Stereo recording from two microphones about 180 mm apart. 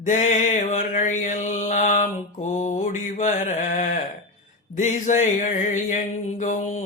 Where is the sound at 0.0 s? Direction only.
45° left (ahead or behind).